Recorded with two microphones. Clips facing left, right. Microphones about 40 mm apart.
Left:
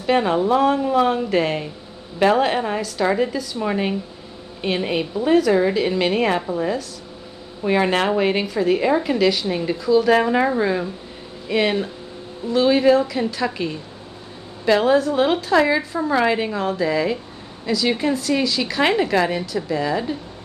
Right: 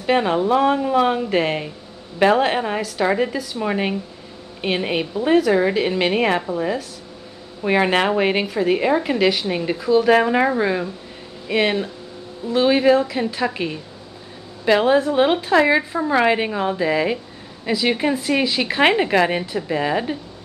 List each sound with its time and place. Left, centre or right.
0.0 s a woman's voice: centre; by 20.2 s right